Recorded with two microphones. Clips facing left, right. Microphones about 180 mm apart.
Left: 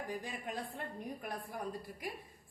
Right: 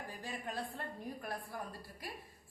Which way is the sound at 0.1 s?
15° left (ahead or behind).